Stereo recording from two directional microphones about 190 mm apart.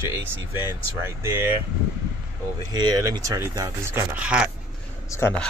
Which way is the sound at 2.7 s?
20° right (ahead or behind).